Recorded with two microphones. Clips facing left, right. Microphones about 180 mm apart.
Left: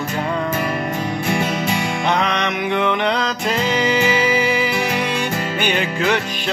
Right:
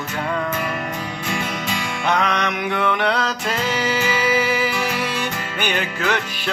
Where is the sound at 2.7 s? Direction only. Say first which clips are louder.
Left 3 dB; 15° left (ahead or behind).